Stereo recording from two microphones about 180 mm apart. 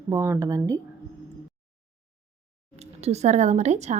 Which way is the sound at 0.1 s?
15° right (ahead or behind).